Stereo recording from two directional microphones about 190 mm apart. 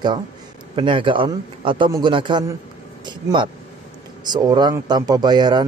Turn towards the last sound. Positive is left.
turn(degrees=-25)  # may be behind; listen again after turning